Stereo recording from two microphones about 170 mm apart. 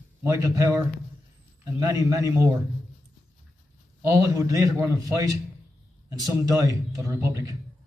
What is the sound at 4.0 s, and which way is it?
A man's voice, 20° right (ahead or behind).